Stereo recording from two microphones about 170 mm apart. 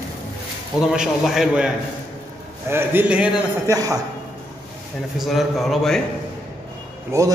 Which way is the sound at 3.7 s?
20° right (ahead or behind).